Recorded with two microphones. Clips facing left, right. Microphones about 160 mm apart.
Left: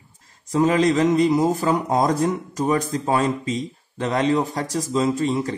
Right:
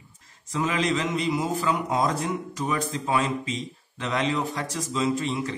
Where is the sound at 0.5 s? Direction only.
40° left (ahead or behind).